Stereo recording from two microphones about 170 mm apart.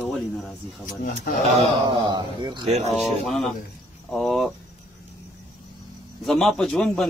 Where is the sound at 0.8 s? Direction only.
50° left (ahead or behind).